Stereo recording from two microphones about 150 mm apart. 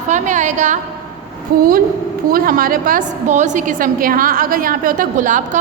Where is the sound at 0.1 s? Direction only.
55° right (ahead or behind).